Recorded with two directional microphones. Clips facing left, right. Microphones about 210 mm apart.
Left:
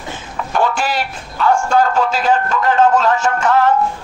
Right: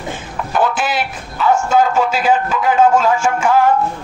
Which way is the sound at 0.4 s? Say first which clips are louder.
Even; 5° right (ahead or behind).